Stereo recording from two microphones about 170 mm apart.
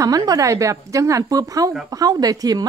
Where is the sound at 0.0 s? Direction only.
20° right (ahead or behind).